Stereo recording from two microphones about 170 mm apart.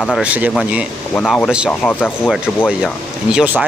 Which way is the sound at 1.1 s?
5° left (ahead or behind).